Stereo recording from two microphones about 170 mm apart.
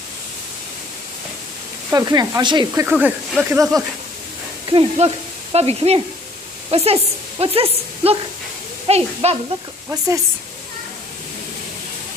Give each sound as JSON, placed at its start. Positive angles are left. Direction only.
{"t": 1.9, "sound": "sizzle", "side_deg": -20}
{"t": 2.8, "sound": "speech", "side_deg": -10}
{"t": 4.6, "sound": "a woman's voice", "side_deg": -35}
{"t": 9.8, "sound": "sizzle", "side_deg": -20}